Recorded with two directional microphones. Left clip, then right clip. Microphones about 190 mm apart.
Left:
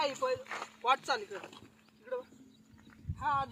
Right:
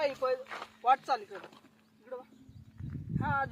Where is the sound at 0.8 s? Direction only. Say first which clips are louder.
Right 3 dB; 35° right (ahead or behind).